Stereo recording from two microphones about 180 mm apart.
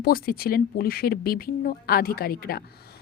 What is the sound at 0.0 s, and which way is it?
A woman's voice, 55° left (ahead or behind).